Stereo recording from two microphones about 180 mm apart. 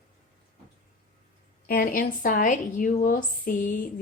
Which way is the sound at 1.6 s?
55° left (ahead or behind).